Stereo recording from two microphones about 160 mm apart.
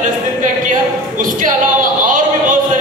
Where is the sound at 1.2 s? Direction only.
55° right (ahead or behind).